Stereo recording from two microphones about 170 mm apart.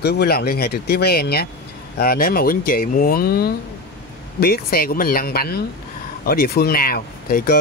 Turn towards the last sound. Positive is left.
turn(degrees=60)  # may be behind; listen again after turning